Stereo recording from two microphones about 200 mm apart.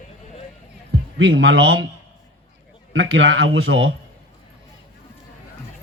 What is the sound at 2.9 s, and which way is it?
A man's voice, 75° right (ahead or behind).